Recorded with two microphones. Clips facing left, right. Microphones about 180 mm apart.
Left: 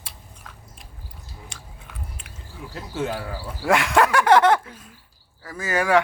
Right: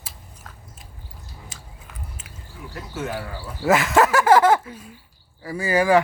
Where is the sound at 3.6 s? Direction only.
5° right (ahead or behind).